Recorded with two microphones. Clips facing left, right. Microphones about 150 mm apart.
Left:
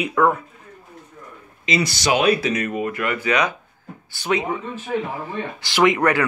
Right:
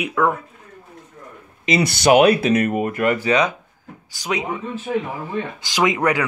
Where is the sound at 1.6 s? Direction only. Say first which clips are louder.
Right 5 dB; 55° right (ahead or behind); by 3.5 s 30° right (ahead or behind).